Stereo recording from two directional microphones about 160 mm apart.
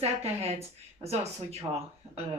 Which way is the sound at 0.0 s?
40° right (ahead or behind).